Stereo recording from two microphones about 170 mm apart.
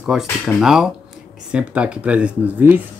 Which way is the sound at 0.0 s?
5° right (ahead or behind).